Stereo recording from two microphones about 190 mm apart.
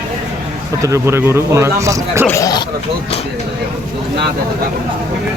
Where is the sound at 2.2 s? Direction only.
15° left (ahead or behind).